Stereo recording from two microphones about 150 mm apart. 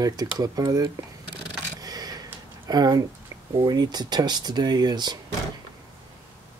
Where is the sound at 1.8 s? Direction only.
25° right (ahead or behind).